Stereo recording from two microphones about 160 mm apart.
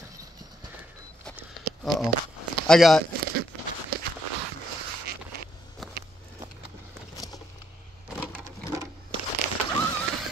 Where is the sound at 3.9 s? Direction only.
75° right (ahead or behind).